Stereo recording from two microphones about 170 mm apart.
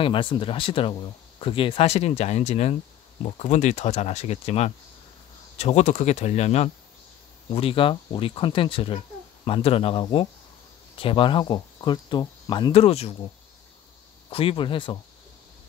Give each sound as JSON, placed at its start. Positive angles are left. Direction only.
{"t": 0.0, "sound": "speech", "side_deg": 30}
{"t": 14.3, "sound": "speech", "side_deg": 30}